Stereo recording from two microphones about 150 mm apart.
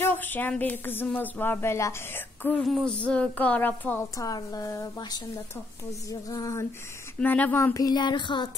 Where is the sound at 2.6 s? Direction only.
Centre (ahead or behind).